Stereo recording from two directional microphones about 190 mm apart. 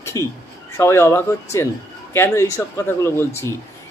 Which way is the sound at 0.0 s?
15° left (ahead or behind).